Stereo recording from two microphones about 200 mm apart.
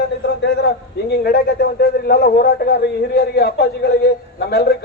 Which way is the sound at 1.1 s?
50° left (ahead or behind).